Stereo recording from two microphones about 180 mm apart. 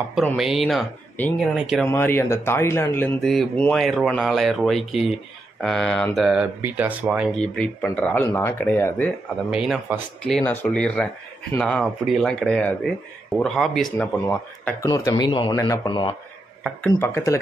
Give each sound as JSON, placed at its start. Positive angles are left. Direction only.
{"t": 0.4, "sound": "speech", "side_deg": 0}
{"t": 1.1, "sound": "speech", "side_deg": 10}
{"t": 3.2, "sound": "speech", "side_deg": 0}
{"t": 7.3, "sound": "speech", "side_deg": 5}
{"t": 9.5, "sound": "speech", "side_deg": -5}
{"t": 14.2, "sound": "speech", "side_deg": 15}
{"t": 17.0, "sound": "speech", "side_deg": 15}